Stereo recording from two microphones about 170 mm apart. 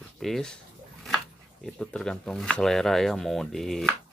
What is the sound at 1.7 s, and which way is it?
Speech, 5° left (ahead or behind).